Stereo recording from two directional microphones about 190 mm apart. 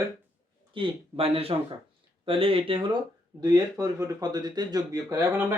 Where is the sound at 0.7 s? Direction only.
30° right (ahead or behind).